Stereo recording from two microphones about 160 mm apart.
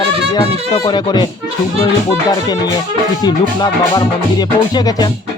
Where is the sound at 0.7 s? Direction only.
25° left (ahead or behind).